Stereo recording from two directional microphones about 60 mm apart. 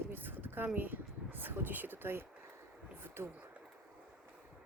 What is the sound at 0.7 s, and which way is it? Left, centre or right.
Speech, right.